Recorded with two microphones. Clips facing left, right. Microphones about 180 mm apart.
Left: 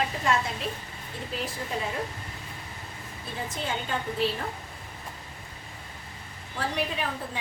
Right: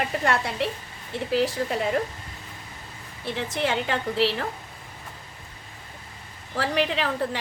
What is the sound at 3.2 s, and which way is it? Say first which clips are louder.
A woman's voice: right 7 dB; 80° right.